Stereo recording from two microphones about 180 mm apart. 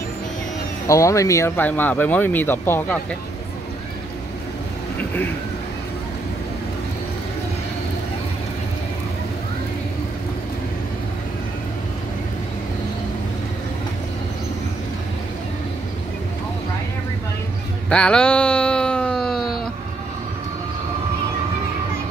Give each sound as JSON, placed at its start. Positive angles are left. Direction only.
{"t": 0.8, "sound": "speech", "side_deg": 15}
{"t": 4.9, "sound": "vehicle", "side_deg": 10}
{"t": 17.8, "sound": "a sound", "side_deg": 5}